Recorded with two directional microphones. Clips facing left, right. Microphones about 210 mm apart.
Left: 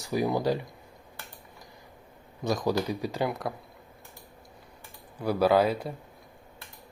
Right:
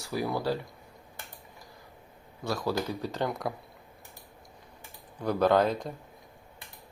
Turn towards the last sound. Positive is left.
turn(degrees=10)  # may be behind; listen again after turning